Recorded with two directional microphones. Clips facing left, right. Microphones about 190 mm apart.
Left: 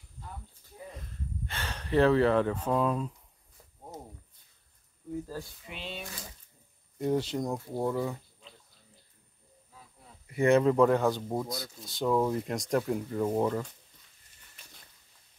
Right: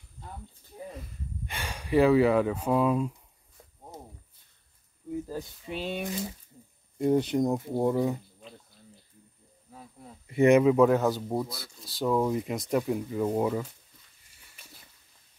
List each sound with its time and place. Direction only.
0.9 s a sound: 10° right (ahead or behind)
5.7 s speech: 45° right (ahead or behind)
7.0 s speech: 15° right (ahead or behind)
10.2 s speech: 20° right (ahead or behind)
10.6 s speech: 5° right (ahead or behind)